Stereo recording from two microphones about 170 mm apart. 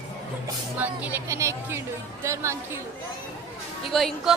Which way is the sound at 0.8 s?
10° right (ahead or behind).